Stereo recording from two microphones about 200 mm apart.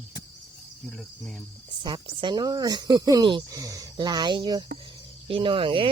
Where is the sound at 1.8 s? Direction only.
25° right (ahead or behind).